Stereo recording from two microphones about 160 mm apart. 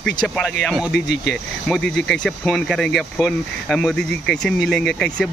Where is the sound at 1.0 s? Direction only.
90° left.